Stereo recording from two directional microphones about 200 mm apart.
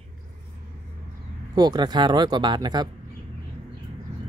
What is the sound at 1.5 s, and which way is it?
Speech, 20° right (ahead or behind).